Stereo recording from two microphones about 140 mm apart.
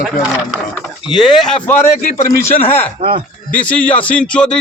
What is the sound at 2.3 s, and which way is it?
Speech, 15° left (ahead or behind).